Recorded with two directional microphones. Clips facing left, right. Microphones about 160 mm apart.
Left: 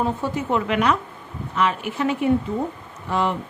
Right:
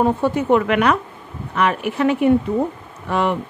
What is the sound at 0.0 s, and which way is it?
A woman's voice, 60° right (ahead or behind).